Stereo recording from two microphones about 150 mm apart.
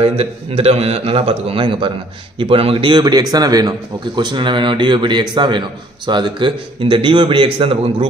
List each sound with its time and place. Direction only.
0.0 s a man's voice: 40° right (ahead or behind)